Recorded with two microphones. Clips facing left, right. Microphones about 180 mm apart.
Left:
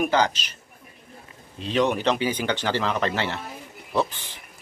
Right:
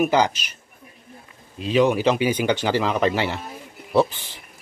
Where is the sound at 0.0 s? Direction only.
10° right (ahead or behind).